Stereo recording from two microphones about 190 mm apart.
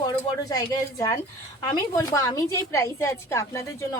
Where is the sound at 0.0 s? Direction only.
20° left (ahead or behind).